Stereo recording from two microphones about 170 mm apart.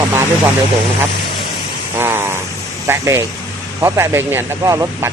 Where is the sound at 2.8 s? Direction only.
15° right (ahead or behind).